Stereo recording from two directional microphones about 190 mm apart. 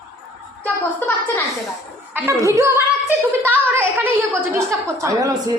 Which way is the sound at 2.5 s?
15° right (ahead or behind).